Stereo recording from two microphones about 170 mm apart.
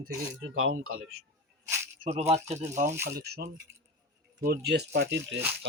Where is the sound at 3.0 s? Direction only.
70° right (ahead or behind).